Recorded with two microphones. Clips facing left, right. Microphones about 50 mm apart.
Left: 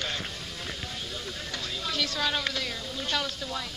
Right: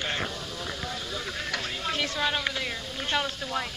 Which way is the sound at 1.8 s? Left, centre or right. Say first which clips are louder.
Even; right.